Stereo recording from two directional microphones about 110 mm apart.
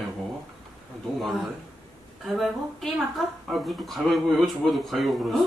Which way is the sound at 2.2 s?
Centre (ahead or behind).